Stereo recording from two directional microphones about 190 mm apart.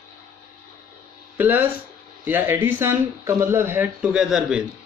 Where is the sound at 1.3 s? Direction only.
10° right (ahead or behind).